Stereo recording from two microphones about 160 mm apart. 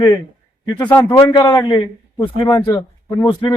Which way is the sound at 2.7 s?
20° left (ahead or behind).